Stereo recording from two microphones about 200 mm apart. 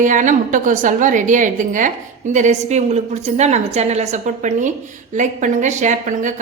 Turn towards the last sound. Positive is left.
turn(degrees=-40)  # may be behind; listen again after turning